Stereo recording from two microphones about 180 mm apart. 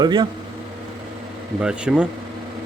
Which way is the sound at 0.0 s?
25° right (ahead or behind).